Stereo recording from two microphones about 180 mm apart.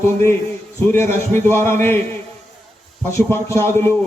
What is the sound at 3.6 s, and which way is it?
Speech, 15° left (ahead or behind).